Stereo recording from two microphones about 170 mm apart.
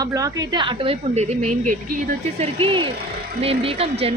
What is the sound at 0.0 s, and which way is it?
Speech, 20° right (ahead or behind).